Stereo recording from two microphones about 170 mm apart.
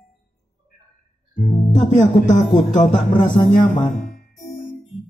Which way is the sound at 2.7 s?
45° left (ahead or behind).